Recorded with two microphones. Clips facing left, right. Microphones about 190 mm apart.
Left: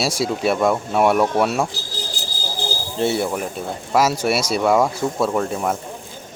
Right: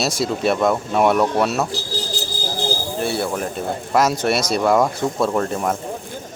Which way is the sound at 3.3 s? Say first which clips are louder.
Right 2 dB; 5° left (ahead or behind).